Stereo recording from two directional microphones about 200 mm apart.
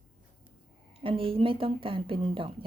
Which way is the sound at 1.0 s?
25° right (ahead or behind).